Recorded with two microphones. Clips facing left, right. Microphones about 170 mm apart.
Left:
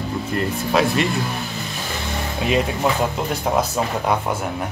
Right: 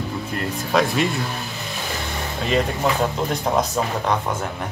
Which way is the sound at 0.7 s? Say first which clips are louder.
Left 1 dB; 5° left (ahead or behind).